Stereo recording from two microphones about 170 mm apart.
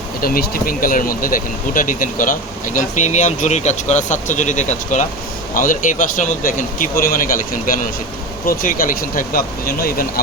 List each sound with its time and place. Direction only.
0.2 s speech: 60° left (ahead or behind)